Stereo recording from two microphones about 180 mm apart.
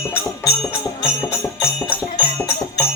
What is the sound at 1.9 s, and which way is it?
Music, 15° left (ahead or behind).